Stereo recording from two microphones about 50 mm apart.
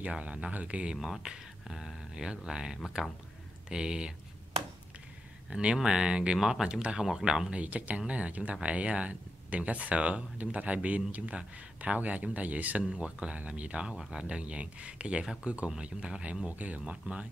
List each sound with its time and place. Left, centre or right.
0.0 s speech: right
1.0 s speech: centre
5.5 s speech: right
7.5 s speech: right
12.8 s speech: centre